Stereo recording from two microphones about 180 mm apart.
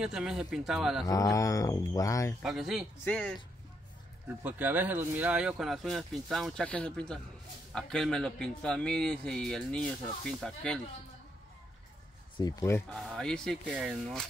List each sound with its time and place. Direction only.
0.0 s a man's voice: 5° right (ahead or behind)
1.0 s speech: 20° left (ahead or behind)
2.4 s a man's voice: centre (ahead or behind)
4.4 s a man's voice: 10° right (ahead or behind)
12.4 s speech: 20° left (ahead or behind)
12.9 s a man's voice: 5° left (ahead or behind)